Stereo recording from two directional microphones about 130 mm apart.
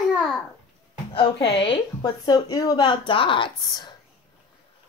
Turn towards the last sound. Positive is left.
turn(degrees=35)  # may be behind; listen again after turning